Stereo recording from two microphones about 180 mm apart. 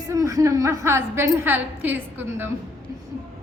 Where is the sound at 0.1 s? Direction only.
20° right (ahead or behind).